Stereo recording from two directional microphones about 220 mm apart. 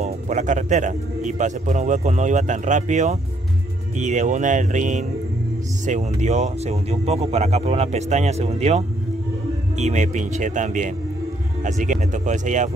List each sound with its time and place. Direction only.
0.0 s a man's voice: 35° right (ahead or behind)